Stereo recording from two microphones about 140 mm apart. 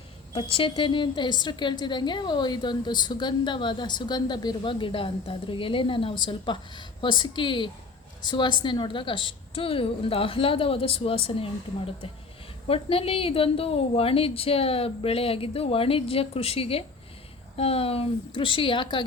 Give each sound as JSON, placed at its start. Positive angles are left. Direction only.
{"t": 0.5, "sound": "a woman's voice", "side_deg": 35}
{"t": 12.6, "sound": "a woman's voice", "side_deg": 40}